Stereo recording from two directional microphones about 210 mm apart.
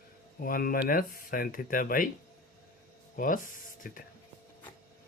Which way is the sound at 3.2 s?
40° left (ahead or behind).